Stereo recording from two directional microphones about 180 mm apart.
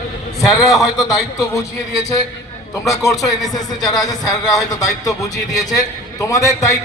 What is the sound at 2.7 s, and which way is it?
A man's voice, 20° left (ahead or behind).